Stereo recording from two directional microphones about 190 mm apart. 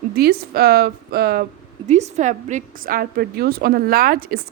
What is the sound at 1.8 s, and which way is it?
A woman's voice, 40° right (ahead or behind).